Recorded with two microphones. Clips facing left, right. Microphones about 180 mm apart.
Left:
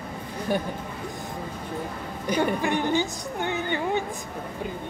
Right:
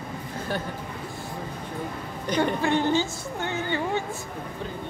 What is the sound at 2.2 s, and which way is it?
A woman's voice, 10° left (ahead or behind).